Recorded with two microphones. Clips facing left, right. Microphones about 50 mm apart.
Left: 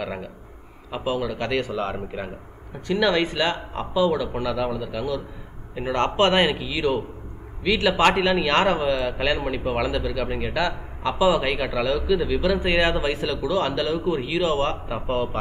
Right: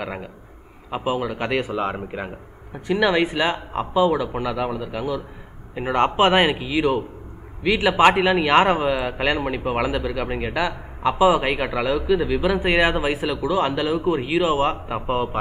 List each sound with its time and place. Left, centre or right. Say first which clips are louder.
0.0 s a man's voice: even; centre